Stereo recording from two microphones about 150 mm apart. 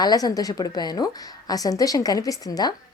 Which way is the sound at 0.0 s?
25° left (ahead or behind).